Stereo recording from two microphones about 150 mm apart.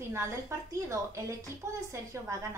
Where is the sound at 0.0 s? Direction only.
20° right (ahead or behind).